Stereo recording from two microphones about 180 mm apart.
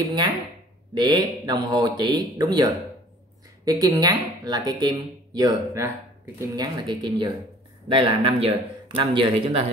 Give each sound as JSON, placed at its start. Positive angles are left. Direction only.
{"t": 0.0, "sound": "speech", "side_deg": -25}